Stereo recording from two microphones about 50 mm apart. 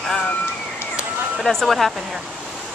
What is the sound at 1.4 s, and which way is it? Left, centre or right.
Speech, centre.